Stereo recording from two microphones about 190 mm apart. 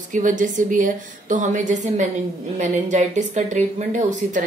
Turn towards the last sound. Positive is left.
turn(degrees=-40)  # may be behind; listen again after turning